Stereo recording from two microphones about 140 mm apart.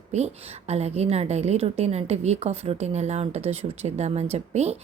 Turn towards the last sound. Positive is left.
turn(degrees=-50)  # may be behind; listen again after turning